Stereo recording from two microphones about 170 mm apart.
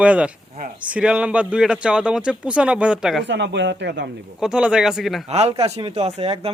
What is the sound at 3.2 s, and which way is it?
Speech, 90° right.